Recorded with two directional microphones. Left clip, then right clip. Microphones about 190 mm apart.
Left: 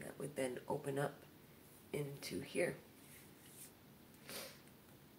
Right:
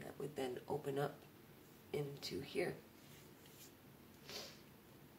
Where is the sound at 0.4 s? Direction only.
15° left (ahead or behind).